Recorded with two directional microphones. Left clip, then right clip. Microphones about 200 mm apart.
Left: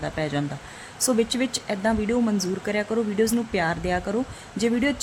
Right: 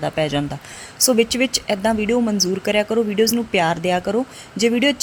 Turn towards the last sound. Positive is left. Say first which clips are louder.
# right 6 dB
turn(degrees=-15)  # may be behind; listen again after turning